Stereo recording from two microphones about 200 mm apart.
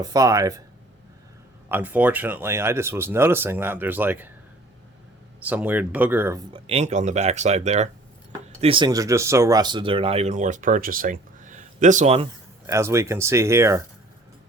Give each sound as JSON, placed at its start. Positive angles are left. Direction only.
{"t": 0.0, "sound": "speech", "side_deg": -20}
{"t": 1.7, "sound": "speech", "side_deg": -10}
{"t": 5.4, "sound": "speech", "side_deg": -10}
{"t": 6.5, "sound": "speech", "side_deg": -30}
{"t": 12.6, "sound": "speech", "side_deg": -15}